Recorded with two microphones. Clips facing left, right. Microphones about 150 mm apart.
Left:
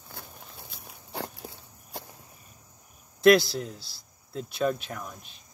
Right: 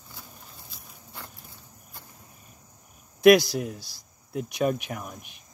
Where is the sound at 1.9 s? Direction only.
80° left.